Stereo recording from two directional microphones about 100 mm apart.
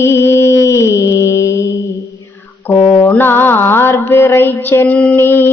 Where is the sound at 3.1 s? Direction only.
20° left (ahead or behind).